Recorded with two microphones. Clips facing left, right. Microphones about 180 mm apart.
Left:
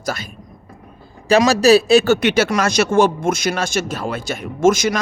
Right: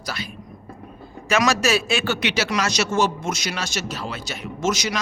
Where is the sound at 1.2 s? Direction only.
35° left (ahead or behind).